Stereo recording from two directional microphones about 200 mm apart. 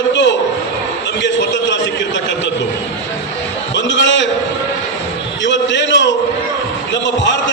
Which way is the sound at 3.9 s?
65° left (ahead or behind).